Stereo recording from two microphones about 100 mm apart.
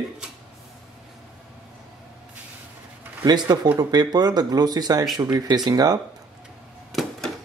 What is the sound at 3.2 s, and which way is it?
Speech, 45° right (ahead or behind).